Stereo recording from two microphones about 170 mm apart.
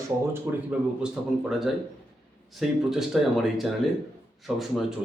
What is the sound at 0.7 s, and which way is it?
Speech, 5° right (ahead or behind).